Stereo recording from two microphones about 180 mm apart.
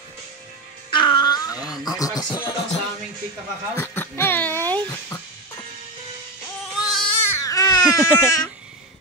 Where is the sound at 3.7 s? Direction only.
10° left (ahead or behind).